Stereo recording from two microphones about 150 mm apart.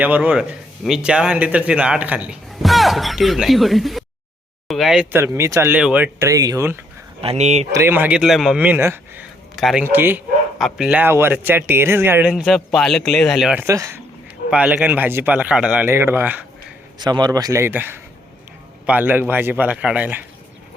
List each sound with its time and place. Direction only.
0.0 s speech: 10° right (ahead or behind)
5.1 s a man's voice: 20° right (ahead or behind)
7.2 s speech: 45° right (ahead or behind)
7.7 s a man's voice: 15° right (ahead or behind)
9.6 s speech: centre (ahead or behind)
9.8 s a man's voice: 15° right (ahead or behind)
12.4 s speech: centre (ahead or behind)
13.6 s speech: 20° right (ahead or behind)
14.5 s a man's voice: 5° right (ahead or behind)
17.0 s a man's voice: 30° right (ahead or behind); by 20.2 s 10° right (ahead or behind)